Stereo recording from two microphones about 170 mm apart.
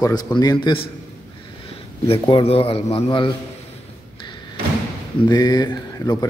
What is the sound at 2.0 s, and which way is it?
A man's voice, 30° left (ahead or behind).